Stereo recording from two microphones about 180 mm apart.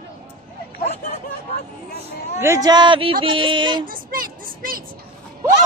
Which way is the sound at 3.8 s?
50° right (ahead or behind).